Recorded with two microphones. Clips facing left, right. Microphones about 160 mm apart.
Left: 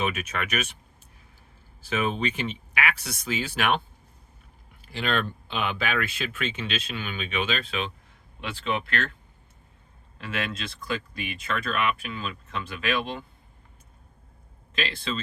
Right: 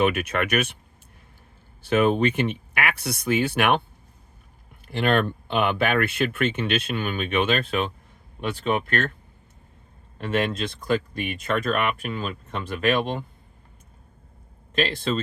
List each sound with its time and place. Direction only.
0.0 s speech: 60° right (ahead or behind)
1.9 s speech: 60° right (ahead or behind)
4.9 s speech: 55° right (ahead or behind)
10.2 s speech: 45° right (ahead or behind)
14.8 s speech: 45° right (ahead or behind)